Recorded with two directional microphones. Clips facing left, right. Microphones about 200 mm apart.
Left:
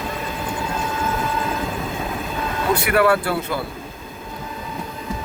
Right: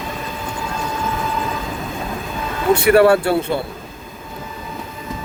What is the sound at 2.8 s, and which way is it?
Speech, 30° right (ahead or behind).